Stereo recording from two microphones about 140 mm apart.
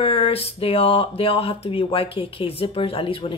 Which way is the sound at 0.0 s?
40° left (ahead or behind).